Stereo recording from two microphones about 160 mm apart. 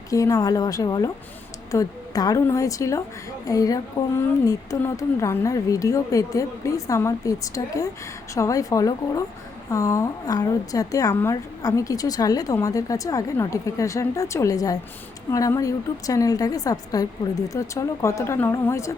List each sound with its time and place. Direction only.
0.1 s speech: 20° left (ahead or behind)